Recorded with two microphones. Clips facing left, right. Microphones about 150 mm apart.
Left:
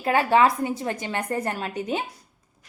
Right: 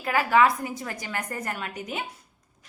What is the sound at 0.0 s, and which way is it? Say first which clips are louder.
A woman's voice: left 2 dB; 25° left (ahead or behind).